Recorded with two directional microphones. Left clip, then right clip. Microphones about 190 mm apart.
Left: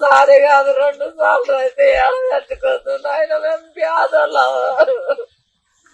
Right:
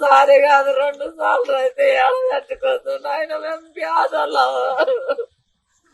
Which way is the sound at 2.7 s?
40° right (ahead or behind).